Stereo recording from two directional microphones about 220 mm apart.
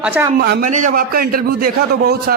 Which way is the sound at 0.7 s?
35° right (ahead or behind).